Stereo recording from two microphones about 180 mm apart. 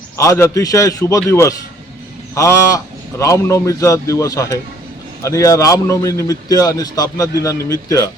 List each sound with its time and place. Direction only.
0.2 s a man's voice: 15° left (ahead or behind)